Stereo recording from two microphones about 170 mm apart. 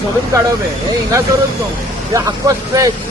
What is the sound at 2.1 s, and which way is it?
Speech, 20° right (ahead or behind).